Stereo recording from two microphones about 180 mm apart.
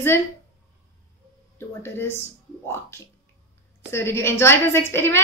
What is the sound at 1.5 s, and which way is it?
A woman's voice, 15° left (ahead or behind).